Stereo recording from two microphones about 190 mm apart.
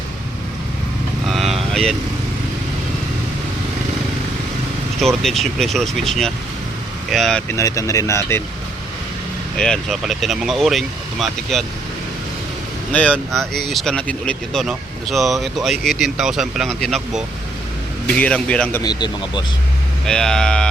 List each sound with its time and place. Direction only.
1.3 s vehicle: centre (ahead or behind)
4.9 s speech: centre (ahead or behind)
7.5 s speech: 15° left (ahead or behind)
9.6 s speech: 5° left (ahead or behind)
12.9 s speech: 5° left (ahead or behind)
18.8 s speech: 20° left (ahead or behind)
20.1 s speech: 5° left (ahead or behind)